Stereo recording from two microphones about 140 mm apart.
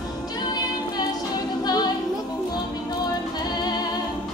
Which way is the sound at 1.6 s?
30° left (ahead or behind).